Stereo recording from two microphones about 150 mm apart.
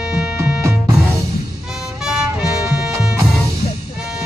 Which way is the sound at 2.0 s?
5° right (ahead or behind).